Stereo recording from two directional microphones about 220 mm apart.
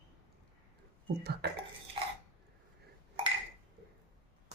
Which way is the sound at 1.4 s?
50° right (ahead or behind).